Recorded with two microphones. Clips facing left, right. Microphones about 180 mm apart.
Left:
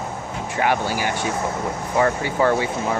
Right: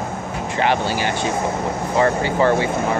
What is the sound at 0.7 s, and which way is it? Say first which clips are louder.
Speech: right 2 dB; 10° left (ahead or behind).